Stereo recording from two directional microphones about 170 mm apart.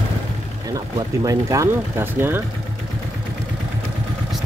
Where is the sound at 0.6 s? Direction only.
20° right (ahead or behind).